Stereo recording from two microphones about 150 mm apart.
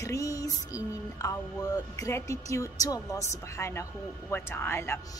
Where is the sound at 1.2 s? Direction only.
20° left (ahead or behind).